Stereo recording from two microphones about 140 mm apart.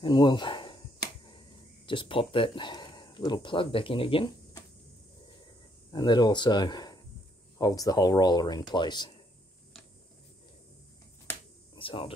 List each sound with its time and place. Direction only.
0.0 s speech: 35° left (ahead or behind)
1.9 s speech: 35° left (ahead or behind)
5.9 s speech: 30° left (ahead or behind)
11.7 s a sound: 35° left (ahead or behind)